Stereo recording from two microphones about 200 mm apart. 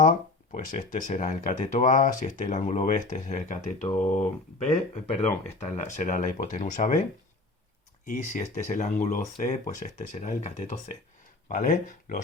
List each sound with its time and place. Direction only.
0.5 s speech: 40° left (ahead or behind)
8.0 s speech: 35° left (ahead or behind)